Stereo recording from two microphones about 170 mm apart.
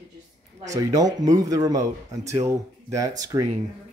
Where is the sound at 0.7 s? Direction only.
20° right (ahead or behind).